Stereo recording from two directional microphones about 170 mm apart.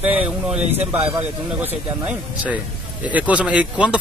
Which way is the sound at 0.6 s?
40° right (ahead or behind).